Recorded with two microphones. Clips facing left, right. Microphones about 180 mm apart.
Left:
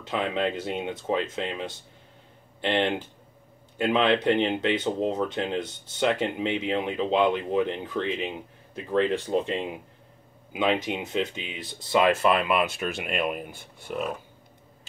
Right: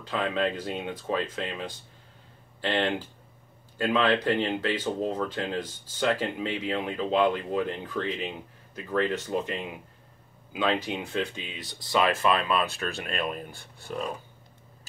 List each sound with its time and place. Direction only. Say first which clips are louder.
0.0 s speech: left 1 dB; 20° left (ahead or behind)